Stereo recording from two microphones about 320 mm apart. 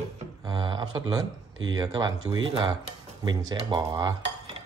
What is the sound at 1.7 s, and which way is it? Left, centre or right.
Cutlery, centre.